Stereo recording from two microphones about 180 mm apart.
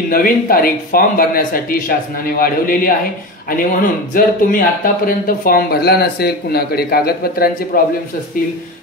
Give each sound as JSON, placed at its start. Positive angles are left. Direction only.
{"t": 0.1, "sound": "speech", "side_deg": 55}